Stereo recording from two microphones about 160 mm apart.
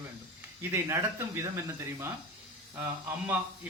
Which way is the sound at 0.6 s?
15° right (ahead or behind).